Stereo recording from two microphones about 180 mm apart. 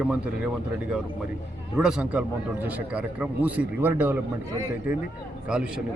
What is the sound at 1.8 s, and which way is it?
A man's voice, 5° right (ahead or behind).